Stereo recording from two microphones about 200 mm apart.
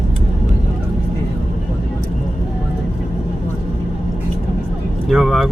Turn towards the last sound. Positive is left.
turn(degrees=0)  # may be behind; listen again after turning